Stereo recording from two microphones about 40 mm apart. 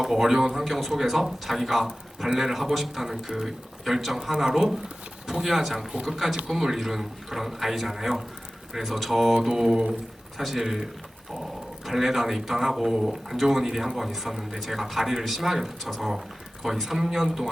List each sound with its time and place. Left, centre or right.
0.0 s speech: centre
10.3 s speech: centre
11.9 s speech: centre